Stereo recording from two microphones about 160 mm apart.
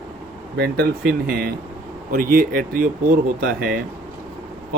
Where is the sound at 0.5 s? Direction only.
75° right (ahead or behind).